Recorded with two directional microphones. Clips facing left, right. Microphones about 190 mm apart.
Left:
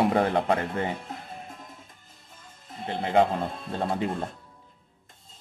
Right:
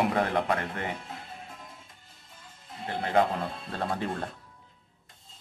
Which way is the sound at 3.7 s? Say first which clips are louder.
Left 3 dB; 20° left (ahead or behind).